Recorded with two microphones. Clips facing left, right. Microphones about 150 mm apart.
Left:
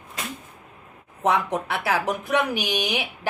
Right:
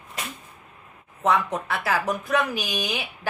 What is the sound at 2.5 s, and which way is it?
Speech, 70° left (ahead or behind).